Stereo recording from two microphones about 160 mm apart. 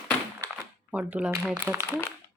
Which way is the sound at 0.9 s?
10° right (ahead or behind).